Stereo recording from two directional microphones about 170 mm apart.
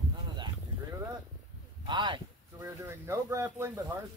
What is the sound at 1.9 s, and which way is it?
Speech, 25° right (ahead or behind).